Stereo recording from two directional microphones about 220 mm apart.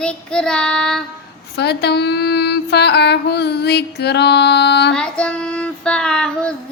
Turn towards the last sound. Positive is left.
turn(degrees=5)  # may be behind; listen again after turning